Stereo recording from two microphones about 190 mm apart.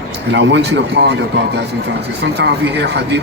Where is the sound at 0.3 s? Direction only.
65° right (ahead or behind).